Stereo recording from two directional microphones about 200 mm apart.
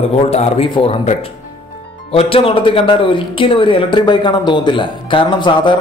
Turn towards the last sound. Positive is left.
turn(degrees=25)  # may be behind; listen again after turning